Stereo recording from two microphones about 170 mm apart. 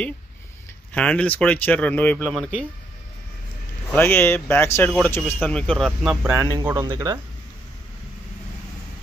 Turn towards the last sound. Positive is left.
turn(degrees=-25)  # may be behind; listen again after turning